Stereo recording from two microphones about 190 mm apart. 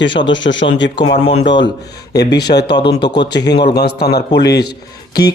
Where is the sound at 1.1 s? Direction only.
35° left (ahead or behind).